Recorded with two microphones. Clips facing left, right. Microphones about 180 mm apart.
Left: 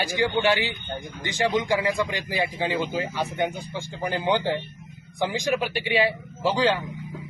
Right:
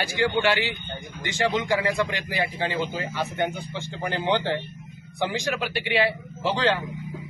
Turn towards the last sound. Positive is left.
turn(degrees=10)  # may be behind; listen again after turning